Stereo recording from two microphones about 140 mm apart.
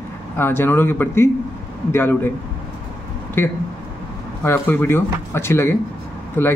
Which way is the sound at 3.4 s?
15° left (ahead or behind).